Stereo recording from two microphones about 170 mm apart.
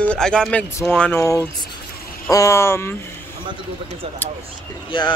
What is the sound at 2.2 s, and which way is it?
Speech, 20° left (ahead or behind).